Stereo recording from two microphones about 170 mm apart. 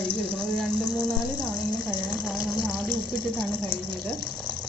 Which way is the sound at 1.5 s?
25° left (ahead or behind).